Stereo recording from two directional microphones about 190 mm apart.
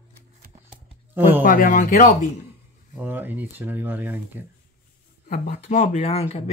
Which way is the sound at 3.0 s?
10° right (ahead or behind).